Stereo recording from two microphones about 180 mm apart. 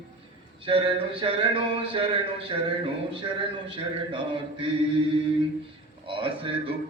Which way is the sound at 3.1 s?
30° right (ahead or behind).